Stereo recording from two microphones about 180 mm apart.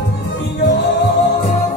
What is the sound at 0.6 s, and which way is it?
Music, 70° left (ahead or behind).